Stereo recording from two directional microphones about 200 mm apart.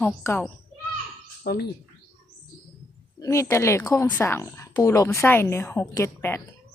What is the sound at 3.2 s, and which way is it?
Speech, 15° left (ahead or behind).